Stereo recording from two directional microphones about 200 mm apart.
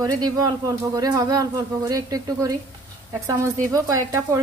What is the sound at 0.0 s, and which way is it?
Speech, 20° right (ahead or behind).